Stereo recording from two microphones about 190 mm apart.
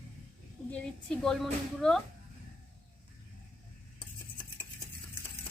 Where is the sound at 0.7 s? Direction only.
5° left (ahead or behind).